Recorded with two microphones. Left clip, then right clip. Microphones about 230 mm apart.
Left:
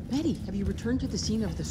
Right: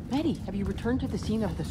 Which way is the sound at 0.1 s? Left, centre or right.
Centre.